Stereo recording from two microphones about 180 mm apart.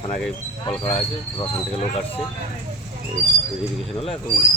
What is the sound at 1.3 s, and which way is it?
Speech, 30° left (ahead or behind).